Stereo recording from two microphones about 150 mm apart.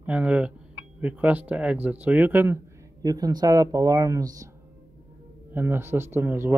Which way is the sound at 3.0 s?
25° right (ahead or behind).